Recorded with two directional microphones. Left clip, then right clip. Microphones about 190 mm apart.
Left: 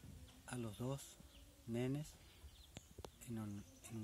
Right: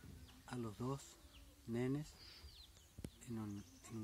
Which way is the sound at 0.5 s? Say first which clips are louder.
Right 1 dB; 35° left (ahead or behind).